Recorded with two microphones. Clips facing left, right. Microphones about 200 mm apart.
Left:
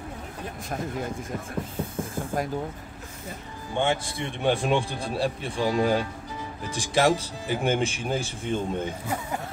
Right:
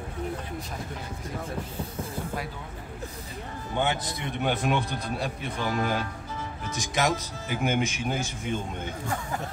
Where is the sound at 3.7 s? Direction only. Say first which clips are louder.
Left 3 dB; 25° left (ahead or behind).